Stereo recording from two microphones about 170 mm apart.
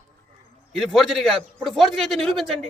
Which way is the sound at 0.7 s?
Centre (ahead or behind).